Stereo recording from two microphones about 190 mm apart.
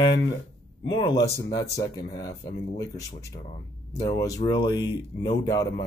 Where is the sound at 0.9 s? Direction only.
20° left (ahead or behind).